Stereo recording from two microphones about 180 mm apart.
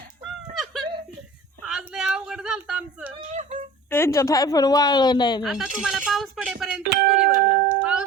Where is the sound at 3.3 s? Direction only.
40° right (ahead or behind).